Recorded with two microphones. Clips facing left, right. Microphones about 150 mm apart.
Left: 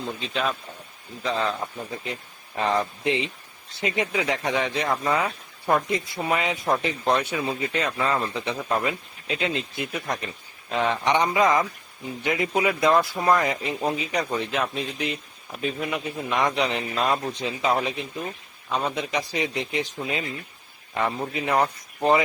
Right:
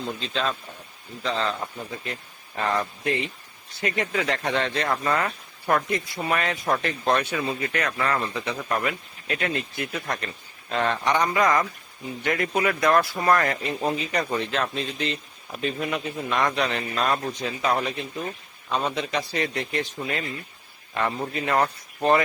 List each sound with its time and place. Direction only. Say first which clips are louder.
0.2 s speech: even; 5° left (ahead or behind)
13.7 s speech: even; 5° left (ahead or behind)
21.3 s speech: even; 15° left (ahead or behind)